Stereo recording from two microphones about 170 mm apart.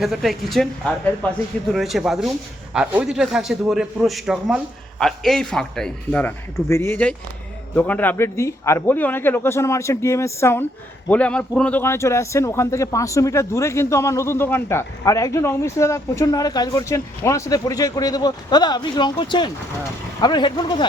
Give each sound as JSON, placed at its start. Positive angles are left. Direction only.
{"t": 0.0, "sound": "a man's voice", "side_deg": 0}